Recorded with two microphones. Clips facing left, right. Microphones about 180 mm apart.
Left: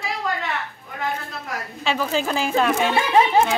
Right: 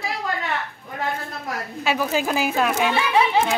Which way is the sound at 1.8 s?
10° right (ahead or behind).